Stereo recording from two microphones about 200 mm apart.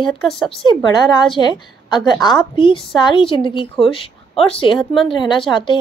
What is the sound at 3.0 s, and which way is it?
A woman's voice, 25° left (ahead or behind).